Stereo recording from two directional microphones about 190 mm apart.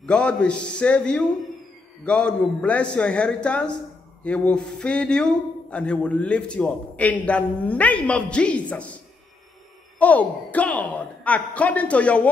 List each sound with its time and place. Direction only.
0.0 s a man's voice: 5° left (ahead or behind)
9.9 s speech: 10° left (ahead or behind)